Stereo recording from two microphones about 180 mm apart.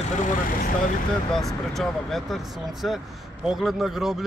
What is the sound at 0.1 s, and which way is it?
Speech, 45° left (ahead or behind).